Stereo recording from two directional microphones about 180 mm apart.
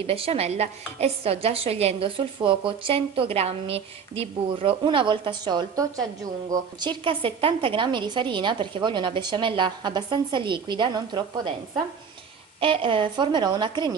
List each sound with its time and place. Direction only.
0.0 s a woman's voice: 30° right (ahead or behind)
12.5 s a woman's voice: 30° right (ahead or behind)